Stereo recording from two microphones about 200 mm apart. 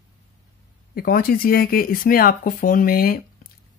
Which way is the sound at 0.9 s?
45° left (ahead or behind).